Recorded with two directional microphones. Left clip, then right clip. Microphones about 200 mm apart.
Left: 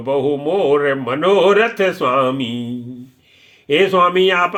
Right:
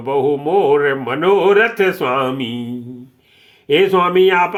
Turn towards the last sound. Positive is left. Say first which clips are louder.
# right 2 dB
turn(degrees=-15)  # may be behind; listen again after turning